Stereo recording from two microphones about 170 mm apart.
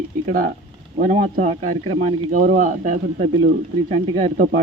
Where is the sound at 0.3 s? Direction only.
55° right (ahead or behind).